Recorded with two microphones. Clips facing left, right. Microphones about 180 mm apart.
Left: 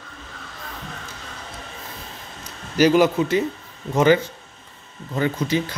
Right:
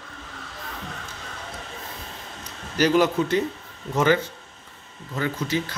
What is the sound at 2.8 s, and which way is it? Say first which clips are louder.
Speech: left 4 dB; 10° left (ahead or behind).